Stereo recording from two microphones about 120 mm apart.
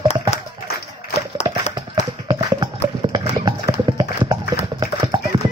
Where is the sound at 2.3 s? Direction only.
30° right (ahead or behind).